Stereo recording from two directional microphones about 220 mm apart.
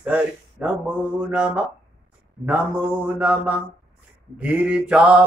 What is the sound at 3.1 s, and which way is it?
Mantra, 5° right (ahead or behind).